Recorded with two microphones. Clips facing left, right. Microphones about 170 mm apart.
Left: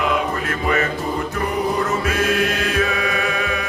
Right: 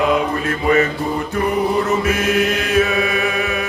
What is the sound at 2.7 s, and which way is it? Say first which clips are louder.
Chant: right 7 dB; 25° right (ahead or behind).